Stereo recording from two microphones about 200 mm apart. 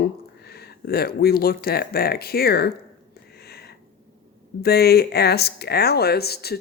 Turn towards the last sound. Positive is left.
turn(degrees=55)  # may be behind; listen again after turning